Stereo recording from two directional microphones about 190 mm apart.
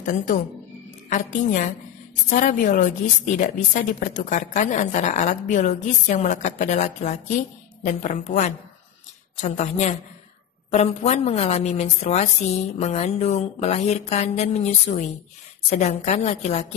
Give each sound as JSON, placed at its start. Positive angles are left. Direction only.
{"t": 0.0, "sound": "a woman's voice", "side_deg": 40}